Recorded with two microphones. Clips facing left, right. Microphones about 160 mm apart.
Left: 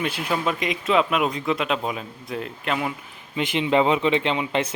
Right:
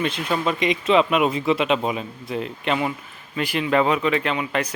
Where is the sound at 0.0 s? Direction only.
10° left (ahead or behind).